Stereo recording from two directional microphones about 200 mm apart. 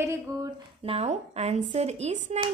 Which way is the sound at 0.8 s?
30° right (ahead or behind).